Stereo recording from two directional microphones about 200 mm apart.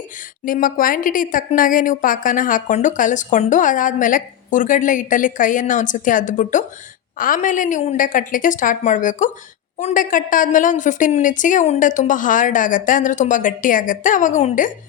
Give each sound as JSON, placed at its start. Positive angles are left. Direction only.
{"t": 0.4, "sound": "speech", "side_deg": 45}